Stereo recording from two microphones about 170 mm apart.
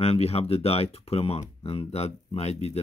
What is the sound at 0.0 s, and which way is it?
Speech, 35° left (ahead or behind).